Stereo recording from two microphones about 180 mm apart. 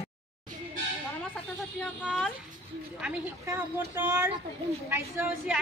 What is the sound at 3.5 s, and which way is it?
A woman's voice, 15° right (ahead or behind).